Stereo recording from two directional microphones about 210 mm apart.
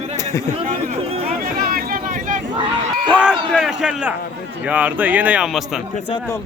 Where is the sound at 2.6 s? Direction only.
20° right (ahead or behind).